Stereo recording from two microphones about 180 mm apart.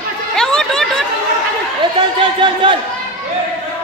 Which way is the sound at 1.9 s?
25° right (ahead or behind).